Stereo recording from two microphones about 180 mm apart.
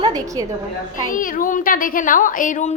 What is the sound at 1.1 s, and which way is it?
Speech, 50° left (ahead or behind).